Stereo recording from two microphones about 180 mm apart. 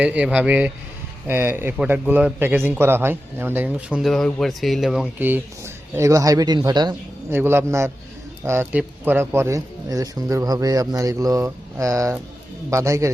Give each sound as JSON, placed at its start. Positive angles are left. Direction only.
{"t": 0.0, "sound": "a man's voice", "side_deg": -5}
{"t": 7.3, "sound": "a man's voice", "side_deg": -15}